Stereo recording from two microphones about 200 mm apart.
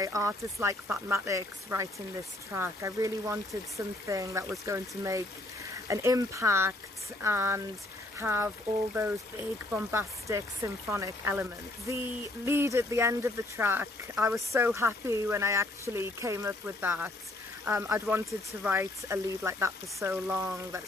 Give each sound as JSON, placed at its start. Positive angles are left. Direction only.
{"t": 0.0, "sound": "speech", "side_deg": -15}
{"t": 9.8, "sound": "speech", "side_deg": -10}
{"t": 12.4, "sound": "speech", "side_deg": -10}